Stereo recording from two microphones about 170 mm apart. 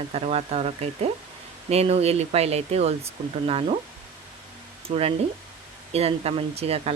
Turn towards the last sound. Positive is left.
turn(degrees=-35)  # may be behind; listen again after turning